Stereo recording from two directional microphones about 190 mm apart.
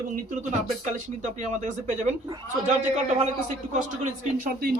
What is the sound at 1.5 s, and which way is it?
Speech, 40° right (ahead or behind).